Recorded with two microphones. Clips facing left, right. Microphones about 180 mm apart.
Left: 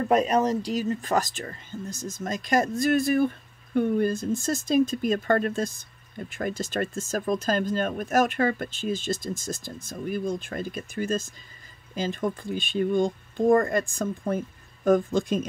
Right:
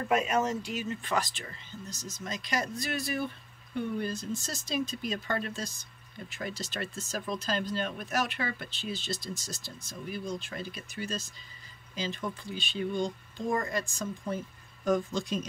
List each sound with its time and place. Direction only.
0.1 s speech: 35° left (ahead or behind); by 15.4 s 50° left (ahead or behind)